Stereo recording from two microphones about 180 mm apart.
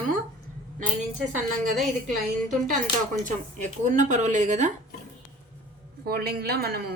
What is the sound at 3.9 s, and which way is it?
Speech, 45° right (ahead or behind).